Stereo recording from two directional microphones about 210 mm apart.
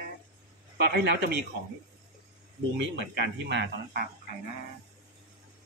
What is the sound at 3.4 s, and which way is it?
Speech, 50° right (ahead or behind).